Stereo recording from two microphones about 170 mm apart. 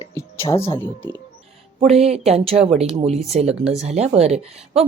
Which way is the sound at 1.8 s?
40° right (ahead or behind).